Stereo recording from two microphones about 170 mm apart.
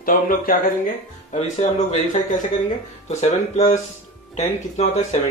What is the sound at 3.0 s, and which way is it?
Speech, 40° left (ahead or behind).